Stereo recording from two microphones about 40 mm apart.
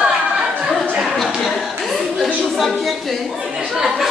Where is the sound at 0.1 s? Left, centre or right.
Right.